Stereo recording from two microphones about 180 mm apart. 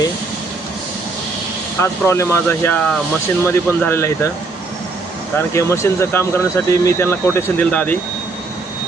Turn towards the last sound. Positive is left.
turn(degrees=10)  # may be behind; listen again after turning